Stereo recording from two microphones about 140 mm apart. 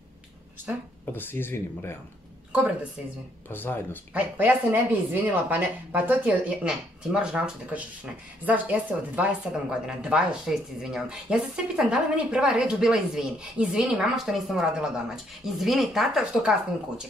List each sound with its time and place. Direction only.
0.7 s a woman's voice: 10° right (ahead or behind)
1.1 s speech: 15° left (ahead or behind)
2.5 s a woman's voice: 10° right (ahead or behind)
3.4 s speech: 15° left (ahead or behind)
4.1 s speech: 10° right (ahead or behind)